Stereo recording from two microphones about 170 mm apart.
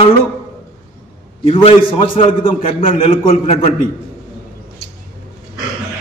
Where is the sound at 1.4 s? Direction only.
35° left (ahead or behind).